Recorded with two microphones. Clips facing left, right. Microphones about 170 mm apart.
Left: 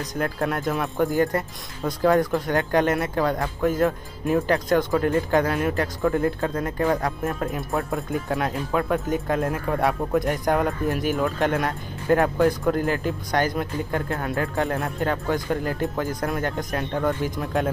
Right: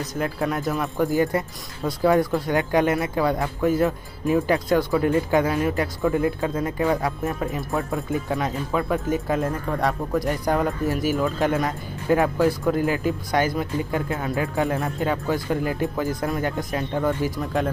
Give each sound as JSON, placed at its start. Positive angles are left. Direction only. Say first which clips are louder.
{"t": 0.2, "sound": "speech", "louder": "even", "side_deg": 0}